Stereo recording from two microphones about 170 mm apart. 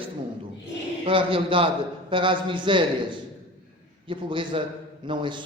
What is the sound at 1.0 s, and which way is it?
A man's voice, 30° right (ahead or behind).